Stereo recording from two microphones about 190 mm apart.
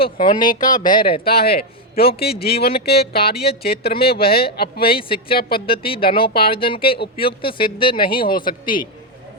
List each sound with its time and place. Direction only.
0.2 s speech: 25° left (ahead or behind)
1.2 s speech: 55° left (ahead or behind)
5.5 s speech: 30° left (ahead or behind)